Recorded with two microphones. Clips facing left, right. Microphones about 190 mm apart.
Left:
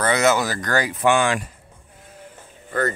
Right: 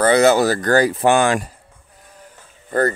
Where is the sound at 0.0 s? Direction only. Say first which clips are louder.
Right 6 dB; 30° right (ahead or behind).